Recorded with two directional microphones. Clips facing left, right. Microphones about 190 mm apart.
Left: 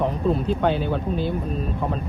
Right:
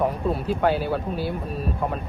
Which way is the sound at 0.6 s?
5° right (ahead or behind).